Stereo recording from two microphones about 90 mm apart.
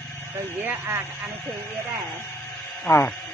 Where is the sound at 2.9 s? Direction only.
35° left (ahead or behind).